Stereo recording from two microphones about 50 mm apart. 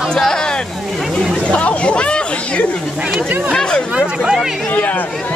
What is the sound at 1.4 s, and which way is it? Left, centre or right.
Speech, left.